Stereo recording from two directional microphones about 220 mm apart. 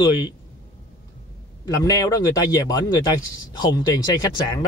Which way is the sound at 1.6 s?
15° left (ahead or behind).